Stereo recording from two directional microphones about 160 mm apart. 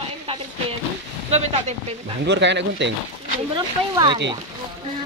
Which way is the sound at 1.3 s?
45° right (ahead or behind).